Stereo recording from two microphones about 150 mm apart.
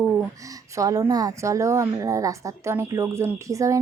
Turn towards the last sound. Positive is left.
turn(degrees=-20)  # may be behind; listen again after turning